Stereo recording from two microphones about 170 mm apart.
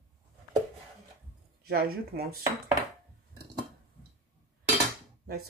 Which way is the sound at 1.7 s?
65° right (ahead or behind).